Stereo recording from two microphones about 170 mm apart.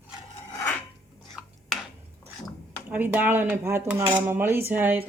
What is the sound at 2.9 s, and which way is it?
Cutlery, 10° right (ahead or behind).